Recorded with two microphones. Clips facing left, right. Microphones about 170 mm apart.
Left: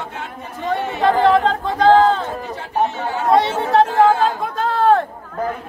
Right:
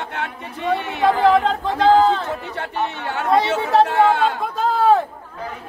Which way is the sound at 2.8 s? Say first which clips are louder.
Left 5 dB; 65° right (ahead or behind).